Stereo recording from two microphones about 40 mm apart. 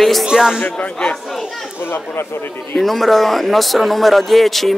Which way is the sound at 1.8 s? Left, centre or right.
Left.